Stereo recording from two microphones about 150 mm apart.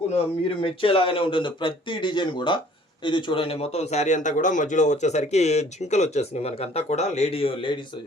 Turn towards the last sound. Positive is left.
turn(degrees=35)  # may be behind; listen again after turning